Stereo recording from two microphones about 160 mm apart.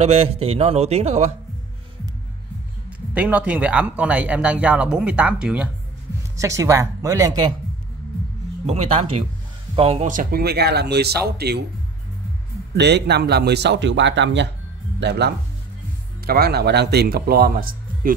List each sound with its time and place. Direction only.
0.0 s a man's voice: 40° right (ahead or behind)
3.2 s speech: 10° right (ahead or behind)
6.3 s speech: 20° right (ahead or behind)
8.6 s a man's voice: 40° right (ahead or behind)
10.0 s speech: 55° right (ahead or behind)
10.4 s speech: 85° right
12.7 s speech: 90° right
16.3 s speech: 75° right (ahead or behind)